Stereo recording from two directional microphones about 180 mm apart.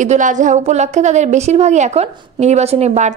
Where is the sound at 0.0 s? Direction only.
45° right (ahead or behind).